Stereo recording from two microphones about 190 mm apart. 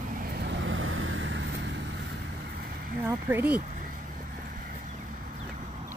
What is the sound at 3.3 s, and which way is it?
Speech, 10° right (ahead or behind).